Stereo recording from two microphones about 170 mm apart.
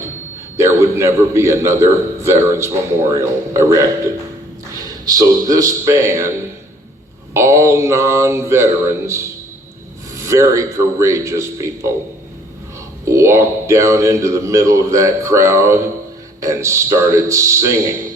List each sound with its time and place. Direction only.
0.5 s a man's voice: 15° right (ahead or behind)
7.3 s speech: 15° right (ahead or behind)
13.1 s speech: 15° right (ahead or behind)